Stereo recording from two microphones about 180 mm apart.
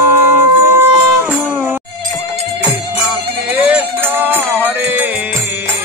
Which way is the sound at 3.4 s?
10° right (ahead or behind).